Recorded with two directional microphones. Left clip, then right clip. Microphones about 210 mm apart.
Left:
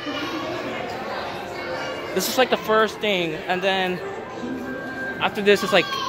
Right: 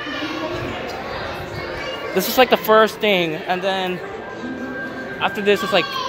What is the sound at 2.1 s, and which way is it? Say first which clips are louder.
Speech: right 5 dB; 20° right (ahead or behind).